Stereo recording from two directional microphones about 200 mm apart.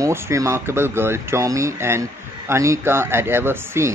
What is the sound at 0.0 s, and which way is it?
A man's voice, 15° right (ahead or behind).